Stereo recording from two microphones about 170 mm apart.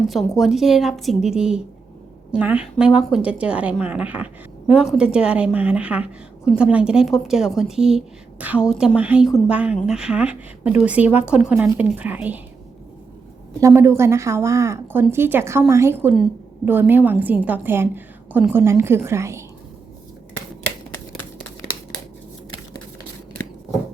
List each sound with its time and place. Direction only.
0.1 s a woman's voice: centre (ahead or behind)
13.6 s a woman's voice: 15° right (ahead or behind)